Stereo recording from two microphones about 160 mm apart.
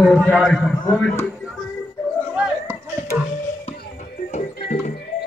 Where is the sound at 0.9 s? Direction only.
15° left (ahead or behind).